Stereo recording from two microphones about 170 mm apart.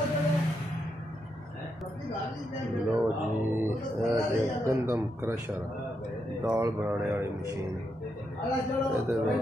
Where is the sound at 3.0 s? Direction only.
15° right (ahead or behind).